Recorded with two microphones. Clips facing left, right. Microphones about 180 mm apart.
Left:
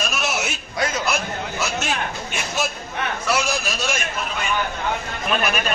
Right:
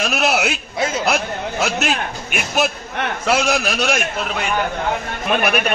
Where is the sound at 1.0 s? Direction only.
65° right (ahead or behind).